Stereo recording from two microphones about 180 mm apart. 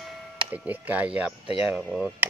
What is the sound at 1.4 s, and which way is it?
Speech, 30° left (ahead or behind).